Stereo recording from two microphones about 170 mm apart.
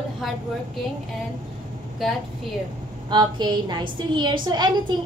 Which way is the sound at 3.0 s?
25° right (ahead or behind).